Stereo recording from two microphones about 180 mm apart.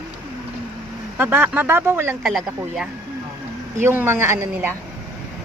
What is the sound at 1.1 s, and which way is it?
A woman's voice, 10° right (ahead or behind).